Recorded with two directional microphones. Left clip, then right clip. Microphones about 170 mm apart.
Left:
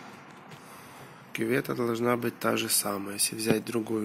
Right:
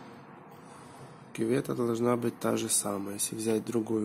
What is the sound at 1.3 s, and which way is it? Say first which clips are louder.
Speech: left 1 dB; 5° right (ahead or behind).